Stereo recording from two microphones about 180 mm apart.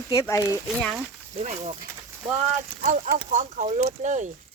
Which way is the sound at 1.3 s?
35° right (ahead or behind).